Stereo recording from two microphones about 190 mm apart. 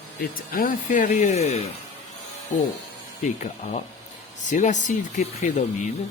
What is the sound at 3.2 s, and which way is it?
Speech, 40° left (ahead or behind).